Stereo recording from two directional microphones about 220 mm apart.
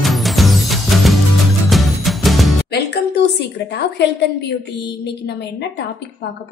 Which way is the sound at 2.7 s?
50° left (ahead or behind).